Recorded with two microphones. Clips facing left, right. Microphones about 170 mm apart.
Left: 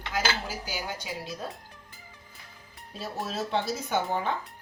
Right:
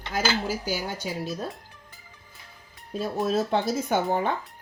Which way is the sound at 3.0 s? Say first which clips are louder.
Right 8 dB; 50° right (ahead or behind).